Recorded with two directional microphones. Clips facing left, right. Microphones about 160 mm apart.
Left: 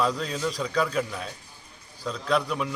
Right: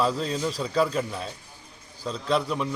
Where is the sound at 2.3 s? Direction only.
Centre (ahead or behind).